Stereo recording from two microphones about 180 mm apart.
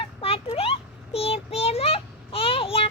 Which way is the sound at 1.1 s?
35° left (ahead or behind).